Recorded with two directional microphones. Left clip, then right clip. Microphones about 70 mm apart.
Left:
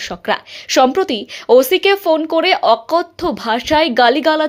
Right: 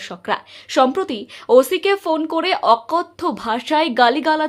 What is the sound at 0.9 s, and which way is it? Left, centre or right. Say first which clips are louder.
Speech: left 6 dB; left.